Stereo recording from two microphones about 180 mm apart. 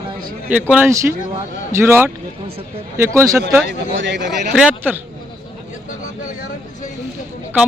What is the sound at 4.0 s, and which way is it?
Speech, 80° right.